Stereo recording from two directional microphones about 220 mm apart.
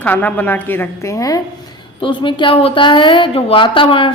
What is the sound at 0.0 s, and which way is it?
A woman's voice, 5° left (ahead or behind).